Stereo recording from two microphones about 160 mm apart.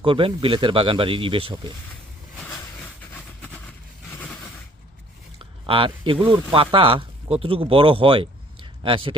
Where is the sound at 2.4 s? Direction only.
10° left (ahead or behind).